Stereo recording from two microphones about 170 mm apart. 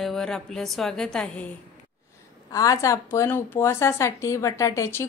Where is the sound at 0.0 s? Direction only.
Centre (ahead or behind).